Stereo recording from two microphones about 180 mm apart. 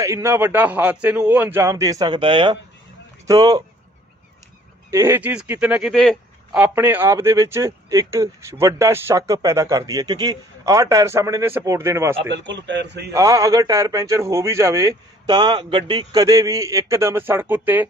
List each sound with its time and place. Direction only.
0.0 s speech: 15° right (ahead or behind)
4.9 s speech: 15° right (ahead or behind); by 6.6 s 5° left (ahead or behind)
6.6 s speech: 10° right (ahead or behind)
12.4 s a man's voice: 85° right
13.1 s speech: 20° right (ahead or behind)